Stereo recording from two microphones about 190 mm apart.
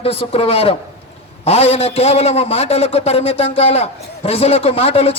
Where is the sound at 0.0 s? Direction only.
30° left (ahead or behind).